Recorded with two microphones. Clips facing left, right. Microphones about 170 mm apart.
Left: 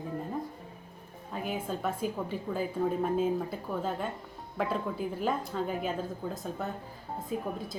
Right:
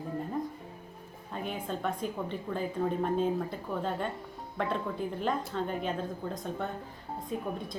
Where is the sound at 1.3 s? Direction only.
5° left (ahead or behind).